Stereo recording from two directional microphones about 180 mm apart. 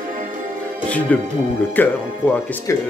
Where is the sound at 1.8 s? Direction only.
10° left (ahead or behind).